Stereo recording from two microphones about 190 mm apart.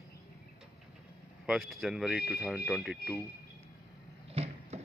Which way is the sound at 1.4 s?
Centre (ahead or behind).